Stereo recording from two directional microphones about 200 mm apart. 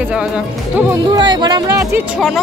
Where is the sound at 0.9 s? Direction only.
20° right (ahead or behind); by 2.4 s 5° right (ahead or behind).